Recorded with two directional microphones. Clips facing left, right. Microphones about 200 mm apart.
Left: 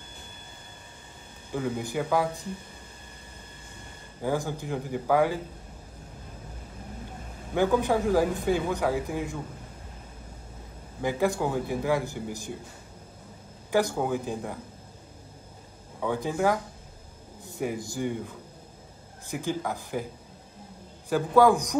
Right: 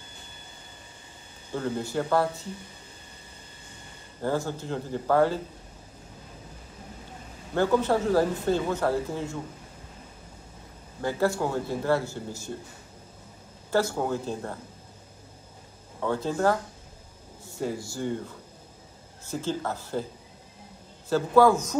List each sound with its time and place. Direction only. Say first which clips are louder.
1.5 s speech: even; 15° left (ahead or behind)
4.2 s speech: even; 15° left (ahead or behind)
7.5 s speech: even; 15° left (ahead or behind)
11.0 s speech: even; 15° left (ahead or behind)
13.7 s speech: even; 15° left (ahead or behind)
16.0 s speech: right 1 dB; 15° left (ahead or behind)
21.1 s speech: right 1 dB; 15° left (ahead or behind)